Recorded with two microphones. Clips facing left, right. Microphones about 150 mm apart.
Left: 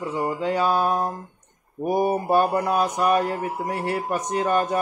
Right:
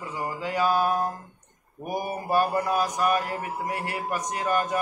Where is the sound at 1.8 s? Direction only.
30° left (ahead or behind).